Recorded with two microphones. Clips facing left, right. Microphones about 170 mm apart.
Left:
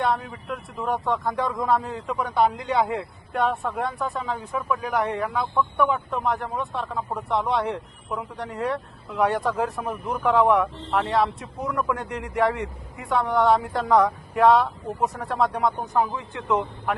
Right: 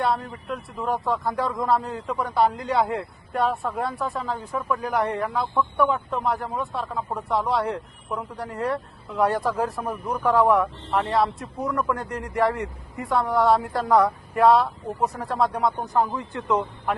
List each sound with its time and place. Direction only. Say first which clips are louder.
0.0 s speech: even; centre (ahead or behind)